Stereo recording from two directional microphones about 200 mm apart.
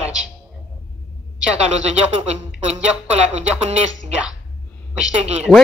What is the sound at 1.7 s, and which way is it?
Speech, 35° right (ahead or behind).